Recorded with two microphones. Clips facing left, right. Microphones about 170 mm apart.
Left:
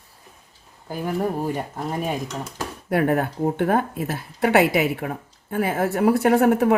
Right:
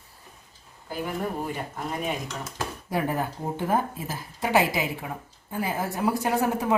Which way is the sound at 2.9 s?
65° left (ahead or behind).